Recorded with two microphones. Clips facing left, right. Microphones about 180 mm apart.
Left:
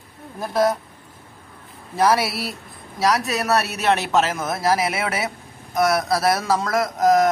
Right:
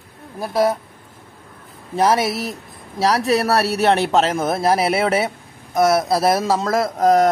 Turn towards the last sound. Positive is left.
turn(degrees=-30)  # may be behind; listen again after turning